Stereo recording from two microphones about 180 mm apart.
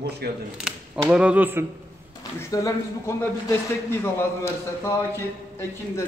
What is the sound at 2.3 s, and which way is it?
A man's voice, 15° left (ahead or behind).